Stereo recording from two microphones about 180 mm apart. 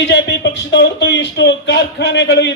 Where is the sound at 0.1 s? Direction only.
70° left (ahead or behind).